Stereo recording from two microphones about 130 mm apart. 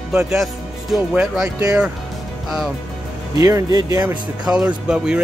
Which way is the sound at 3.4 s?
30° right (ahead or behind).